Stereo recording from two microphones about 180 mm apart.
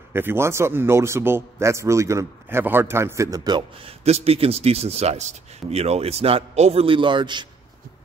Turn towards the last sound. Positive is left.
turn(degrees=-25)  # may be behind; listen again after turning